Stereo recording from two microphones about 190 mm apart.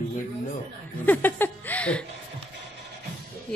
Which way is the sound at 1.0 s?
10° left (ahead or behind).